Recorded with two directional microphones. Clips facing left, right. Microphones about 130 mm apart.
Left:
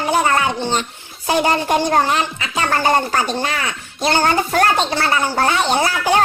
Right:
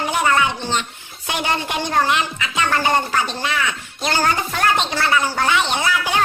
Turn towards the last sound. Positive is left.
turn(degrees=40)  # may be behind; listen again after turning